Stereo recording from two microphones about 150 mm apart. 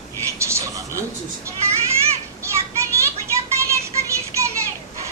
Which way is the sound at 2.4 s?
20° right (ahead or behind).